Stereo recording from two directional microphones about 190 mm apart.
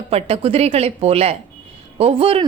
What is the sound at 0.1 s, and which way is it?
A woman's voice, 30° right (ahead or behind).